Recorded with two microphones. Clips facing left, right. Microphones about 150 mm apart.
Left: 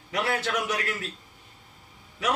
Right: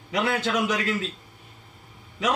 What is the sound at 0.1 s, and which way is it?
A man's voice, 20° right (ahead or behind).